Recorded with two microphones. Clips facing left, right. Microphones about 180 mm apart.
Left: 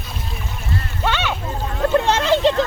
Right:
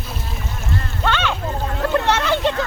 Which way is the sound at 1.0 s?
10° left (ahead or behind).